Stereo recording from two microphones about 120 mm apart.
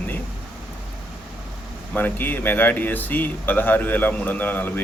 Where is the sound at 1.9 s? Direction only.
15° left (ahead or behind).